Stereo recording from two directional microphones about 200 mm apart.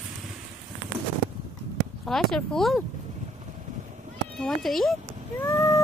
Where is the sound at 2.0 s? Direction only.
5° left (ahead or behind).